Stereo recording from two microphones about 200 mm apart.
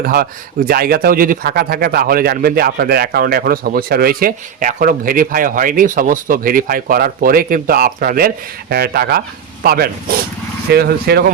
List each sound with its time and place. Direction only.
0.0 s speech: 50° right (ahead or behind)